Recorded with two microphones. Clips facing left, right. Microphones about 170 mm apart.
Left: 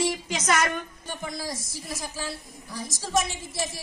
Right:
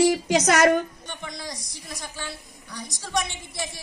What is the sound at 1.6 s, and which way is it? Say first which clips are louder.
A woman's voice: left 3 dB; 5° left (ahead or behind).